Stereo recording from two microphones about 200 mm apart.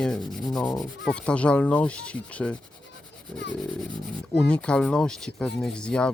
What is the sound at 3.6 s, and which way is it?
Rub, centre (ahead or behind).